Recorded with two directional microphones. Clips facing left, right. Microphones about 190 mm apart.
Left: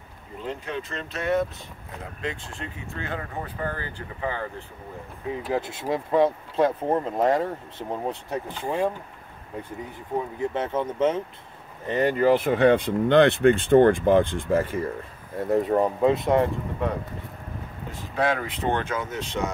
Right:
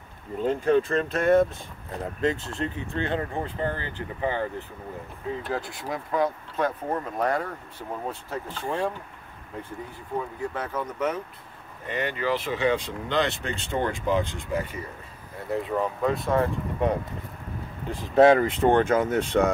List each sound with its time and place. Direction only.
0.5 s speech: 45° right (ahead or behind)
2.6 s speech: 35° right (ahead or behind)
5.3 s speech: 15° left (ahead or behind)
10.1 s speech: 25° left (ahead or behind)
11.9 s speech: 40° left (ahead or behind); by 16.4 s 20° left (ahead or behind)
18.1 s speech: 50° right (ahead or behind)